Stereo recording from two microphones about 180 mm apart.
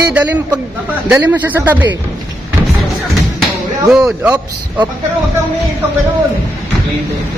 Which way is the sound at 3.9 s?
5° right (ahead or behind).